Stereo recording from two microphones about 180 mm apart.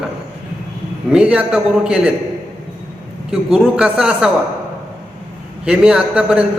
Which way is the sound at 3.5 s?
5° right (ahead or behind).